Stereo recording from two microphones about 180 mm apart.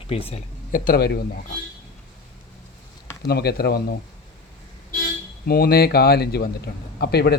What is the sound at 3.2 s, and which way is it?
Speech, 60° left (ahead or behind).